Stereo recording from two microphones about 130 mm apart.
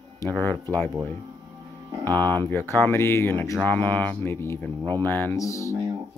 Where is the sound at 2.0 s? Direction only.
15° left (ahead or behind).